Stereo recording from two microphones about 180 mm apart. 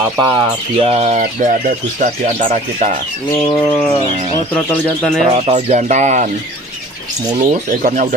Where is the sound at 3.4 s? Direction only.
25° left (ahead or behind).